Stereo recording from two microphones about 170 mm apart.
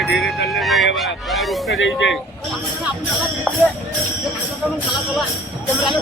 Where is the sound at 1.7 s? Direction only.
90° left.